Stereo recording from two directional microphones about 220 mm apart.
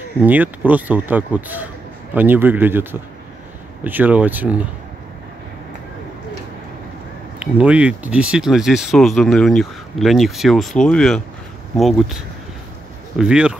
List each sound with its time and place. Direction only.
0.2 s speech: 5° right (ahead or behind)
7.3 s speech: 5° right (ahead or behind)
13.2 s speech: 5° right (ahead or behind)